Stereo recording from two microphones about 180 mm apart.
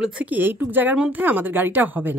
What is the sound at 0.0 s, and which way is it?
A woman's voice, 10° right (ahead or behind).